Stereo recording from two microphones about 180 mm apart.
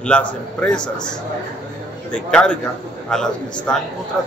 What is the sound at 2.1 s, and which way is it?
A man's voice, 5° left (ahead or behind).